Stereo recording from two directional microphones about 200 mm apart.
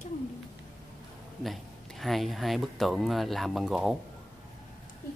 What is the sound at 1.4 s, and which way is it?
Speech, centre (ahead or behind).